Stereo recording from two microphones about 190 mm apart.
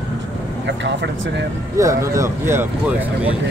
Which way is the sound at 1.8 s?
15° right (ahead or behind).